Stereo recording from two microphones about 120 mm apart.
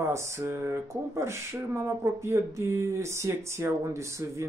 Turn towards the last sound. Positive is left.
turn(degrees=-25)  # may be behind; listen again after turning